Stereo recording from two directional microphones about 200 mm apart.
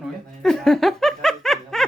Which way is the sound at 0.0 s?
Centre (ahead or behind).